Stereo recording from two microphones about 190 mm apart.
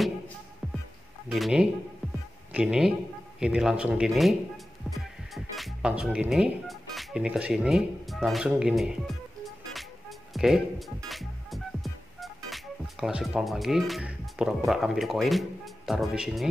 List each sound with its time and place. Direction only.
1.3 s speech: 5° right (ahead or behind)
4.9 s music: centre (ahead or behind)
10.3 s speech: centre (ahead or behind)
11.1 s music: centre (ahead or behind)
12.4 s speech: centre (ahead or behind)